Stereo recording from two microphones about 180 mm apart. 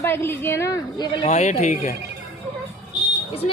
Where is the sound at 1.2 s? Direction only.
40° left (ahead or behind).